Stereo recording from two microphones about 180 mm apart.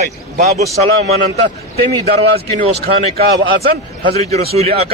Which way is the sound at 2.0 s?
60° right (ahead or behind).